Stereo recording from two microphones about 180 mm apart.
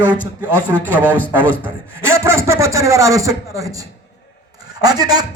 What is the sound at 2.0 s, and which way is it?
A man's voice, 15° right (ahead or behind).